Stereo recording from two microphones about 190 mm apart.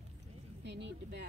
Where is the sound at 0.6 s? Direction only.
65° right (ahead or behind).